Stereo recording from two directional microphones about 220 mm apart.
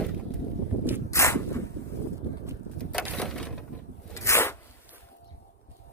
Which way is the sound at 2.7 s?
5° left (ahead or behind).